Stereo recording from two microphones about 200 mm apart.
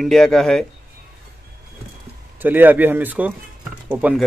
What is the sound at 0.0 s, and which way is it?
Speech, centre (ahead or behind).